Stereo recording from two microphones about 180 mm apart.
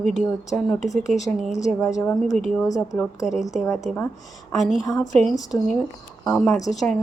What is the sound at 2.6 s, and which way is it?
Speech, 20° left (ahead or behind).